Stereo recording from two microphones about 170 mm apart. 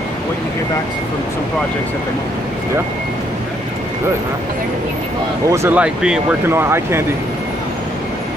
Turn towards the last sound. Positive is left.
turn(degrees=-15)  # may be behind; listen again after turning